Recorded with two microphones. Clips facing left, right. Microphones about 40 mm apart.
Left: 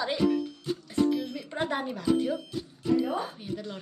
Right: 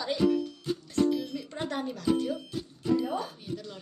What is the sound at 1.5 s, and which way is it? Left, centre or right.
Speech, centre.